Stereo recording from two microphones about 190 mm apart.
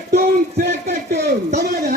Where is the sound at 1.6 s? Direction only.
55° right (ahead or behind).